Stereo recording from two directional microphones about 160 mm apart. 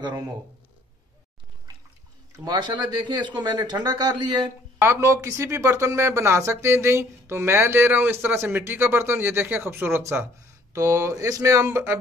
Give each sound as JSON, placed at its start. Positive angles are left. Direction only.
{"t": 2.3, "sound": "a man's voice", "side_deg": -25}